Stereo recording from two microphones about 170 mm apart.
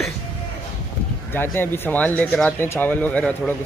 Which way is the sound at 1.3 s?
10° left (ahead or behind).